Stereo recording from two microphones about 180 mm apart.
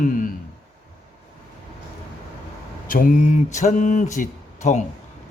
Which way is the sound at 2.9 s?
50° left (ahead or behind).